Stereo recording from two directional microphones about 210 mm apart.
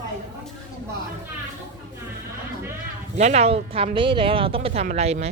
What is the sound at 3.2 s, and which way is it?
Speech, 30° right (ahead or behind).